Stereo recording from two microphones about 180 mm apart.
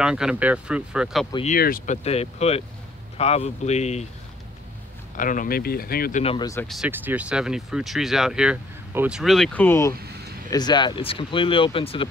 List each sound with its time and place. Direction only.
0.0 s speech: 5° right (ahead or behind)
1.6 s speech: 55° left (ahead or behind)
2.0 s speech: 35° left (ahead or behind)
5.1 s speech: 45° left (ahead or behind)
6.2 s speech: 25° left (ahead or behind)
6.9 s speech: 10° right (ahead or behind); by 12.1 s 30° left (ahead or behind)